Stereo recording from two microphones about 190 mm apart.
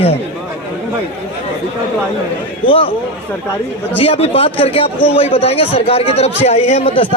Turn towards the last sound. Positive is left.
turn(degrees=30)  # may be behind; listen again after turning